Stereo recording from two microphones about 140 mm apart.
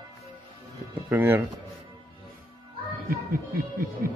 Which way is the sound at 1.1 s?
15° right (ahead or behind).